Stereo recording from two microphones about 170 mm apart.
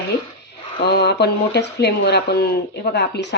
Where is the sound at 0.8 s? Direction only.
75° left (ahead or behind).